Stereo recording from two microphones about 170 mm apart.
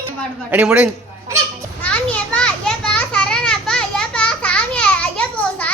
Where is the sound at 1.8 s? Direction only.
5° left (ahead or behind).